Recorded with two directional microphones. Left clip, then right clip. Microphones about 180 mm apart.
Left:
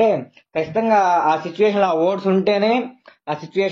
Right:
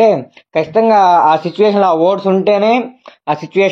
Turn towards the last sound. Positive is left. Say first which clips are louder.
# right 8 dB
turn(degrees=-45)  # may be behind; listen again after turning